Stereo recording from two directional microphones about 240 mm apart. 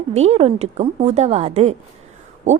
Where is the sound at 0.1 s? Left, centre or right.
Right.